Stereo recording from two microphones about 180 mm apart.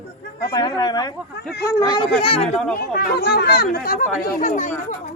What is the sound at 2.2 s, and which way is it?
Speech, 30° left (ahead or behind).